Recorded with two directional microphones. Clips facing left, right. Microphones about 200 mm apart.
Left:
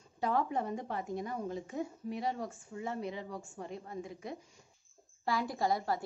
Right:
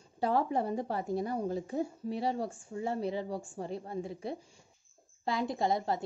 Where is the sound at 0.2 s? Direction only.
30° right (ahead or behind).